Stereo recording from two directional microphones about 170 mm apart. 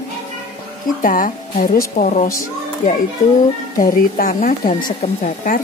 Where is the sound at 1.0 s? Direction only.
55° left (ahead or behind).